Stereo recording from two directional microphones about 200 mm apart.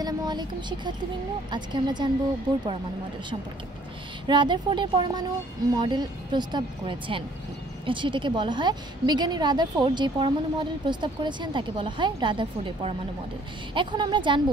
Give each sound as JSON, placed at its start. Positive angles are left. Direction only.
{"t": 0.0, "sound": "a woman's voice", "side_deg": -20}
{"t": 4.3, "sound": "a woman's voice", "side_deg": -25}